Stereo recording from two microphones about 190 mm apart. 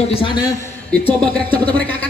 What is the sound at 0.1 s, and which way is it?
Speech, 25° left (ahead or behind).